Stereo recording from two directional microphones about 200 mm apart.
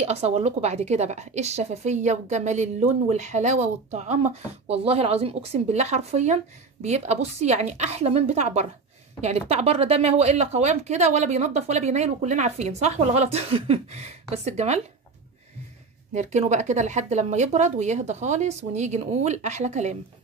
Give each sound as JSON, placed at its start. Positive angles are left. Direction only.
{"t": 0.0, "sound": "a woman's voice", "side_deg": -30}
{"t": 16.1, "sound": "a woman's voice", "side_deg": -35}